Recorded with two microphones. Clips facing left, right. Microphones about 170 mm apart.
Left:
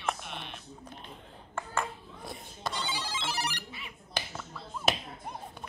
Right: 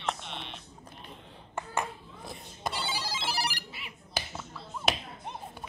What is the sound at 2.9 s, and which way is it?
Ringtone, 10° right (ahead or behind).